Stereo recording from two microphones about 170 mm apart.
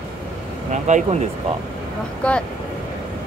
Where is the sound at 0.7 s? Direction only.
45° right (ahead or behind).